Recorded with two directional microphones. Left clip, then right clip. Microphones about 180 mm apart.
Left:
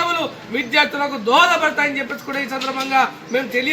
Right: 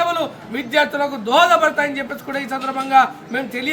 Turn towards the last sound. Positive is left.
turn(degrees=-15)  # may be behind; listen again after turning